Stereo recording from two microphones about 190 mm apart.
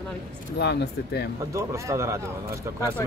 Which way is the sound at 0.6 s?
60° left (ahead or behind).